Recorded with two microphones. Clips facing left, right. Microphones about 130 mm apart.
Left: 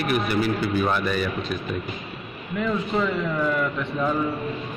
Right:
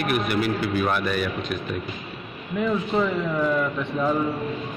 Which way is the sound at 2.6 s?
15° right (ahead or behind).